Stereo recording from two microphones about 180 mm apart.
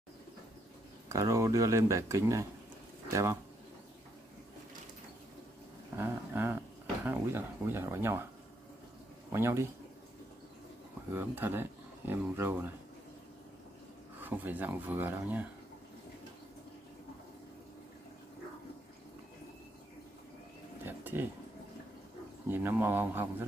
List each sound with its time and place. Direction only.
1.0 s speech: 15° right (ahead or behind)
5.9 s speech: 15° right (ahead or behind)
9.3 s speech: 15° right (ahead or behind)
11.1 s speech: 10° right (ahead or behind)
14.2 s speech: 10° right (ahead or behind)
20.8 s a sound: 10° right (ahead or behind)
22.5 s speech: 10° right (ahead or behind)